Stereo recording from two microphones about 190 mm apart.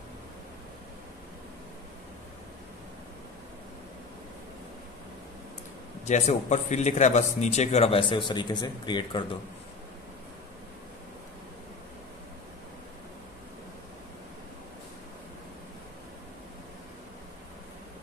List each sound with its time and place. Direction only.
6.0 s speech: 35° left (ahead or behind)